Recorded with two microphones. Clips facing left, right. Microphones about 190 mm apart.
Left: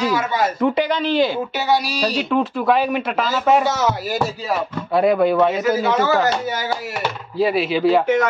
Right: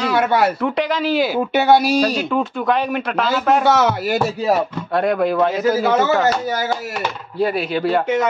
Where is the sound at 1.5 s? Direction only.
55° right (ahead or behind).